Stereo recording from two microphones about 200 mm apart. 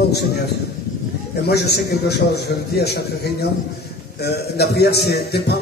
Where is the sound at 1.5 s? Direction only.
55° left (ahead or behind).